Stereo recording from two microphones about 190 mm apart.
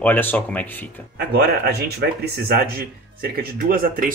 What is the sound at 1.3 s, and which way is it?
Speech, 60° right (ahead or behind).